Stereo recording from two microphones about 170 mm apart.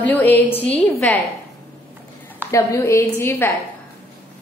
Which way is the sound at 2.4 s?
20° left (ahead or behind).